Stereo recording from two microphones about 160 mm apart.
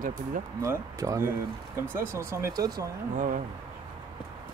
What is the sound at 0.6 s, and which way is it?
Speech, 20° right (ahead or behind).